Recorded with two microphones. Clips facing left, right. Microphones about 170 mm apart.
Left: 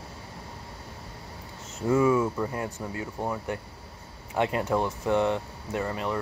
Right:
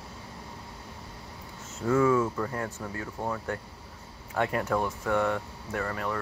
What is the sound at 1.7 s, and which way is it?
Speech, 15° left (ahead or behind).